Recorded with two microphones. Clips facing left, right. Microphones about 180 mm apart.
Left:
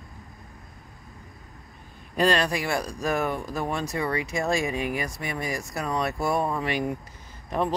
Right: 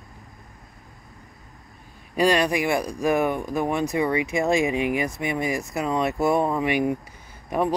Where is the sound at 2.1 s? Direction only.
10° right (ahead or behind).